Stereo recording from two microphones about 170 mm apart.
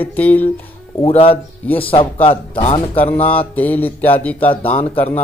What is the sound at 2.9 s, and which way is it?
Speech, 10° left (ahead or behind).